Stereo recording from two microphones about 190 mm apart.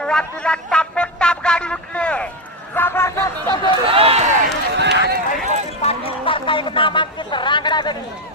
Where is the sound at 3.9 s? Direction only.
30° right (ahead or behind).